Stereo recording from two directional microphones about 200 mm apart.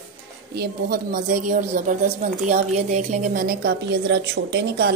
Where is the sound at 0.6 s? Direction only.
45° right (ahead or behind).